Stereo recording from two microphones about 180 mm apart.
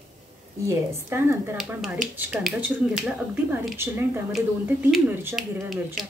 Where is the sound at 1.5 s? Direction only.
Centre (ahead or behind).